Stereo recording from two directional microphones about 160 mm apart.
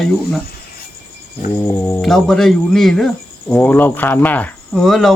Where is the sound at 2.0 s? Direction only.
5° left (ahead or behind).